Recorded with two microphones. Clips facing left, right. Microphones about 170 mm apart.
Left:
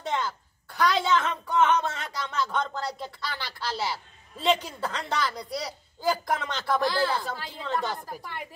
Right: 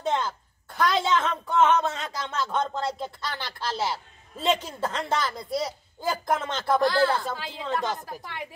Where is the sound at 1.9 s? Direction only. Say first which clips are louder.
Right 2 dB; 25° right (ahead or behind).